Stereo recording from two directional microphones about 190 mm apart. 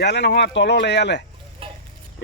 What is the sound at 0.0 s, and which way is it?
Speech, 60° left (ahead or behind).